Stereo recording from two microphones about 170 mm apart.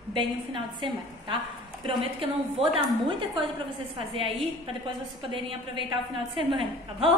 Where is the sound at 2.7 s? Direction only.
30° right (ahead or behind).